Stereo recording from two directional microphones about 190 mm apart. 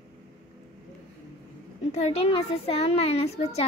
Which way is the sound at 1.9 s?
30° left (ahead or behind).